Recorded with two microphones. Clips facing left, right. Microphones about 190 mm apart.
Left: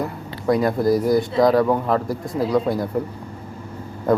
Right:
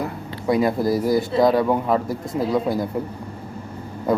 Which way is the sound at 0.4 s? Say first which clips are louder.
Left 1 dB; centre (ahead or behind).